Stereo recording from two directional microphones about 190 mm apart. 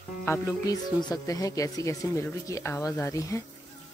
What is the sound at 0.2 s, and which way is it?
Speech, 15° left (ahead or behind).